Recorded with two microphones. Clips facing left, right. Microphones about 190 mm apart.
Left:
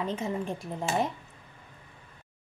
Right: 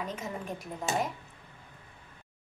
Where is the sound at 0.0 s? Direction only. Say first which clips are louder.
Left 5 dB; 30° left (ahead or behind).